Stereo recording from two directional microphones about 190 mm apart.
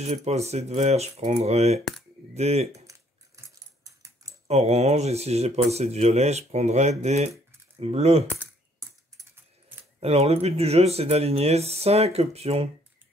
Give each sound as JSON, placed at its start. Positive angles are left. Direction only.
{"t": 0.0, "sound": "speech", "side_deg": -35}
{"t": 2.9, "sound": "dog", "side_deg": -15}
{"t": 4.5, "sound": "speech", "side_deg": -35}
{"t": 9.9, "sound": "speech", "side_deg": -30}